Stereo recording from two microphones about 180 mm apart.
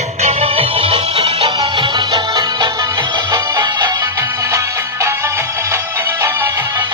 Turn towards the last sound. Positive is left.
turn(degrees=-15)  # may be behind; listen again after turning